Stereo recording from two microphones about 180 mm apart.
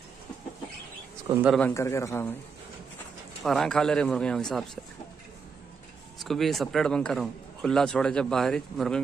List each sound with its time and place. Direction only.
1.6 s a man's voice: 15° left (ahead or behind)
3.4 s a man's voice: centre (ahead or behind)
6.1 s a man's voice: centre (ahead or behind)